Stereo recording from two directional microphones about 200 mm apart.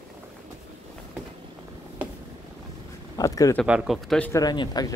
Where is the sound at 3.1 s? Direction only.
15° left (ahead or behind).